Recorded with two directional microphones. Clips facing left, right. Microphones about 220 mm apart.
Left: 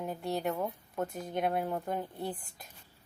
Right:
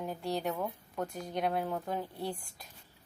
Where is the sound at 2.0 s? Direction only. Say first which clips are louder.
Even; 20° left (ahead or behind).